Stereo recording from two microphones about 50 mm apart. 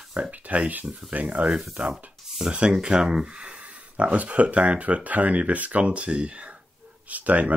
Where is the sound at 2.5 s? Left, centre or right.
Right.